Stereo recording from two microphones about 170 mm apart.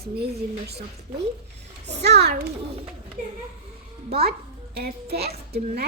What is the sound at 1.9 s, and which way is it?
Speech, 75° right (ahead or behind).